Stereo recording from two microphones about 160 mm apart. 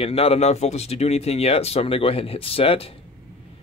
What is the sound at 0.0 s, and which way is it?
Speech, 35° left (ahead or behind).